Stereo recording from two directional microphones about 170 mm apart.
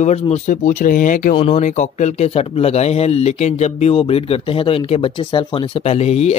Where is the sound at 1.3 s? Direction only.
40° left (ahead or behind).